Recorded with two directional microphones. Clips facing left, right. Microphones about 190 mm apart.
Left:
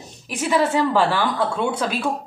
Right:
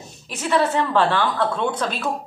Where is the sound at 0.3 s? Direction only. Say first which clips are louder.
Left 1 dB; 10° left (ahead or behind).